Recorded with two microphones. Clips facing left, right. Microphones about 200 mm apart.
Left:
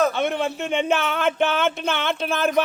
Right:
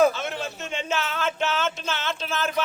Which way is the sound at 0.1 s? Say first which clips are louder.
Left 8 dB; 60° left (ahead or behind).